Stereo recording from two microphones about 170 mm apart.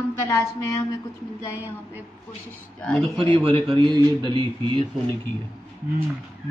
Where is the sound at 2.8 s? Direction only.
Centre (ahead or behind).